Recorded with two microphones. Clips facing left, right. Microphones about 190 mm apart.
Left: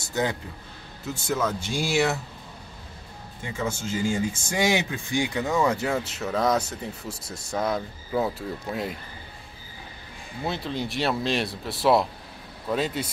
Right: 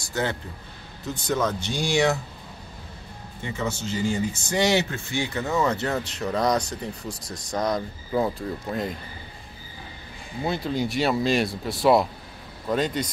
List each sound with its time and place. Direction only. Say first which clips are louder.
0.0 s a man's voice: left 1 dB; 15° left (ahead or behind)
3.5 s speech: even; 10° left (ahead or behind)
10.4 s speech: right 3 dB; centre (ahead or behind)